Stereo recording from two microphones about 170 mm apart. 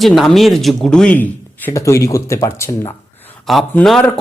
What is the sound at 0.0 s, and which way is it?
A man's voice, centre (ahead or behind).